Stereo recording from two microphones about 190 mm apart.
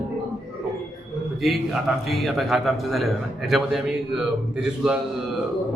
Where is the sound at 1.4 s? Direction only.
Centre (ahead or behind).